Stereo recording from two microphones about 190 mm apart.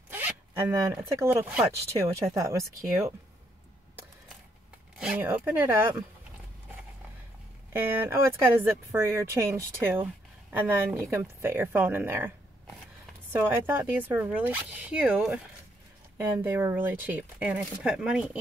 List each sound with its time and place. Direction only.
0.1 s zipper: 10° right (ahead or behind)
1.0 s speech: 10° right (ahead or behind)
4.9 s speech: 5° right (ahead or behind)
7.7 s speech: 10° right (ahead or behind)